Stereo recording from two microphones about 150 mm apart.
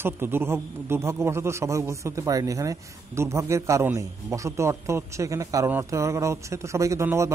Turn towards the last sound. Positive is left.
turn(degrees=-20)  # may be behind; listen again after turning